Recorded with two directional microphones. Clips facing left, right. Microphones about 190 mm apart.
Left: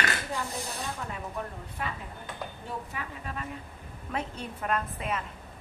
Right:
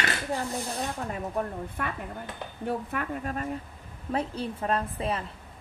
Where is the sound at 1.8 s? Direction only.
55° right (ahead or behind).